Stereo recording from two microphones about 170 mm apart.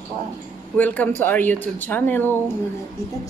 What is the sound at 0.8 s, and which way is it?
Speech, 10° left (ahead or behind).